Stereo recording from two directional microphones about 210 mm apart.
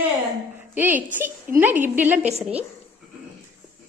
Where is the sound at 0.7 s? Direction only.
10° right (ahead or behind).